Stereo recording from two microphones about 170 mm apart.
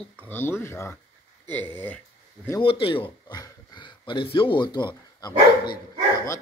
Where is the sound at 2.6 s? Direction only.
30° left (ahead or behind).